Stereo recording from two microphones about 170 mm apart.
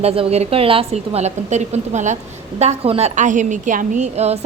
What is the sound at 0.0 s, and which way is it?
A woman's voice, 35° right (ahead or behind).